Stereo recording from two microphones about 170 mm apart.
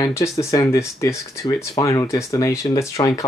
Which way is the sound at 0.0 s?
15° left (ahead or behind).